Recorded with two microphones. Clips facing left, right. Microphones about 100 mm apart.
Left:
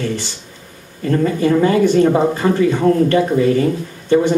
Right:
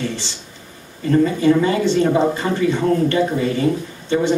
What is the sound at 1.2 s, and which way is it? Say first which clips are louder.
Speech: left 2 dB; 45° left (ahead or behind).